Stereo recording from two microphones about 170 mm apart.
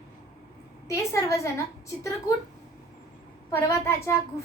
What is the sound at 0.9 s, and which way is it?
Speech, 20° left (ahead or behind).